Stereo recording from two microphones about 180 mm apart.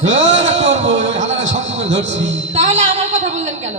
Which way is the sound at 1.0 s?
90° right.